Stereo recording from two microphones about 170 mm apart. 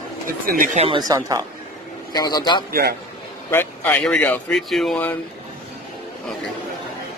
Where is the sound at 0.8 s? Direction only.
30° right (ahead or behind).